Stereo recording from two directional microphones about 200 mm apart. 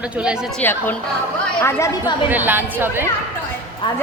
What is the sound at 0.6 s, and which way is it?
Speech, 10° left (ahead or behind).